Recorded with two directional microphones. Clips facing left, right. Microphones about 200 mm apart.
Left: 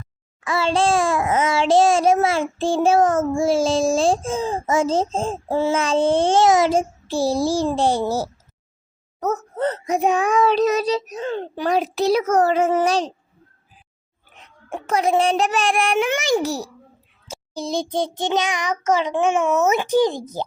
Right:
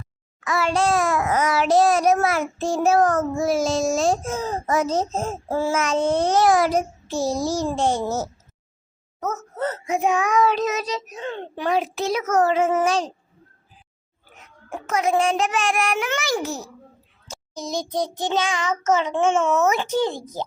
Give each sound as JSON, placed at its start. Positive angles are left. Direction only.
{"t": 0.4, "sound": "a child's voice", "side_deg": 30}
{"t": 14.4, "sound": "a child's voice", "side_deg": 30}
{"t": 16.4, "sound": "a child's voice", "side_deg": 35}